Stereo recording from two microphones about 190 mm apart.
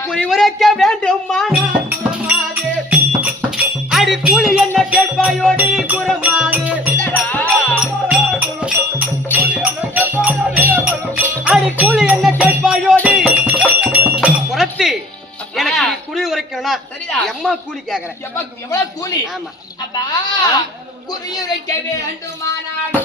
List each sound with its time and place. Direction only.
0.1 s speech: centre (ahead or behind)
2.9 s music: 5° right (ahead or behind)
7.0 s music: 10° left (ahead or behind)
7.8 s music: 5° right (ahead or behind)
15.5 s a sound: centre (ahead or behind)
21.1 s a man's voice: 20° left (ahead or behind)